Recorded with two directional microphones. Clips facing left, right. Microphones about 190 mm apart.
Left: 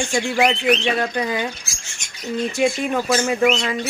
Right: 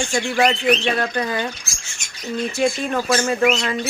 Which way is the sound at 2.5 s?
15° left (ahead or behind).